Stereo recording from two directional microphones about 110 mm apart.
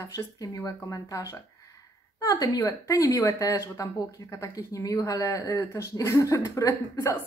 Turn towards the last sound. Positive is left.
turn(degrees=30)  # may be behind; listen again after turning